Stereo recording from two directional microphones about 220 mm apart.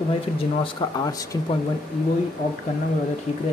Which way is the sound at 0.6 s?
15° left (ahead or behind).